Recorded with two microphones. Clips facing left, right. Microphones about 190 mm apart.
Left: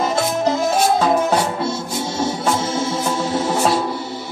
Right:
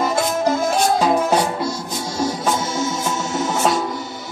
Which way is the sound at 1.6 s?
25° left (ahead or behind).